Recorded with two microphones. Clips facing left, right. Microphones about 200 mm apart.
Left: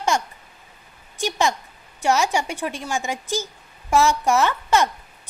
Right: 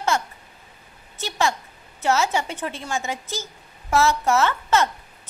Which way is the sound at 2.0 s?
15° left (ahead or behind).